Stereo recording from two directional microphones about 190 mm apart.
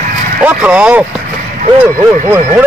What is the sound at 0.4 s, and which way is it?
Speech, 10° right (ahead or behind).